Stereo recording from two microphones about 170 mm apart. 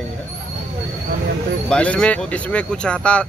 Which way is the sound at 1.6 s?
5° left (ahead or behind).